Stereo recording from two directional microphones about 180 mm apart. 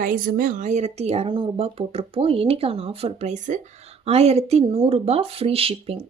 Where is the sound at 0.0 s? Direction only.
50° right (ahead or behind).